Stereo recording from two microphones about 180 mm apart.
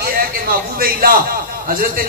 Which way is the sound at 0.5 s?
55° right (ahead or behind).